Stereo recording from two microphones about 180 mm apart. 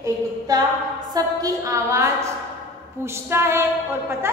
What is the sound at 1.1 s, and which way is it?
A woman's voice, 20° right (ahead or behind).